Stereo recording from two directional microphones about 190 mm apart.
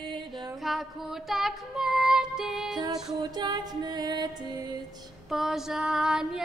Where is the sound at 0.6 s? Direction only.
Centre (ahead or behind).